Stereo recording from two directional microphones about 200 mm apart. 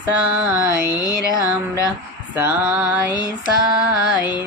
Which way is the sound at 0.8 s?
20° left (ahead or behind).